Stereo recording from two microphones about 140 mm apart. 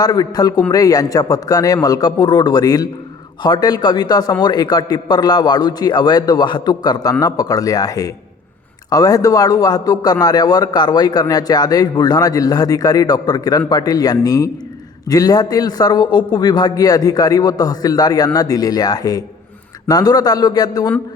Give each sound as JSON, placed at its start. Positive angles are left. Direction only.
{"t": 0.0, "sound": "a man's voice", "side_deg": 30}